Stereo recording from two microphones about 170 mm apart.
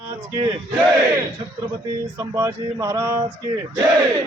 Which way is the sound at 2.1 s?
15° right (ahead or behind).